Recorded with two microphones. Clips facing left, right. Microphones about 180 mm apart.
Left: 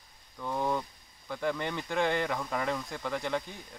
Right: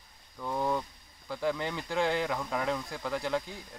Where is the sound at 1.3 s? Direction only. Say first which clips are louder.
Even; 5° right (ahead or behind).